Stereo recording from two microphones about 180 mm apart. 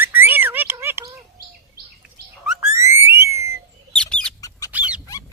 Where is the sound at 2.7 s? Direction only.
15° right (ahead or behind).